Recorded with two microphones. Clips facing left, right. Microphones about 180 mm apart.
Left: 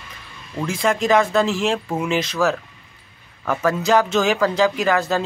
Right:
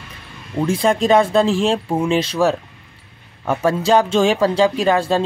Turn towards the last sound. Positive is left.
turn(degrees=-30)  # may be behind; listen again after turning